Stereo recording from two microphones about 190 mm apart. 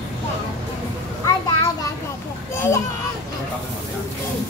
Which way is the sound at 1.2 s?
20° left (ahead or behind).